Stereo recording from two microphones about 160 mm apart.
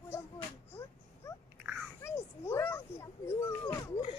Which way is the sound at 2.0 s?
15° left (ahead or behind).